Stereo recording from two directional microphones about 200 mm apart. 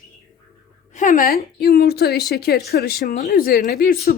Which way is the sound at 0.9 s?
40° left (ahead or behind).